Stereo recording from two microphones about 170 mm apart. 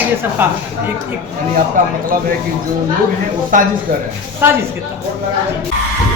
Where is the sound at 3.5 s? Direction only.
50° right (ahead or behind).